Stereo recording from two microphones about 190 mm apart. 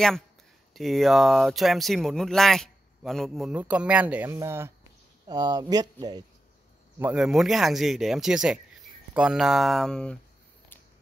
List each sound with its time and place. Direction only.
0.7 s speech: centre (ahead or behind); by 6.2 s 20° right (ahead or behind)
7.0 s speech: 5° right (ahead or behind)